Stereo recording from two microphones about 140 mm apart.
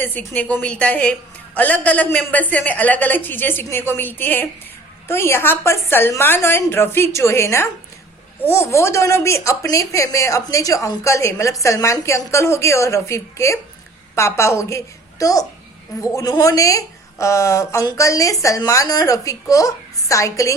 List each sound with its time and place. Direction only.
0.0 s a woman's voice: 15° left (ahead or behind)